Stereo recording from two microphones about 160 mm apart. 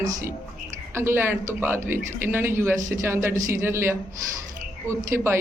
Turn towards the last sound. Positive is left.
turn(degrees=-15)  # may be behind; listen again after turning